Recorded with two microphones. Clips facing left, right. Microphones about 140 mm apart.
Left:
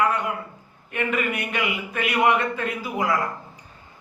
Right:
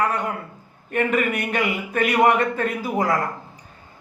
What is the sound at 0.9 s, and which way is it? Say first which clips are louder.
Speech: right 4 dB; 45° right (ahead or behind).